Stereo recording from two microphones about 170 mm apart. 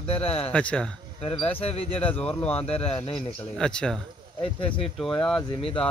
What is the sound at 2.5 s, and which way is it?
Speech, 35° left (ahead or behind).